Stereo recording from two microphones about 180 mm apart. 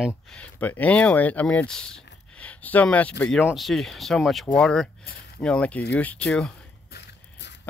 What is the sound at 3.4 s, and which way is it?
Speech, 5° right (ahead or behind).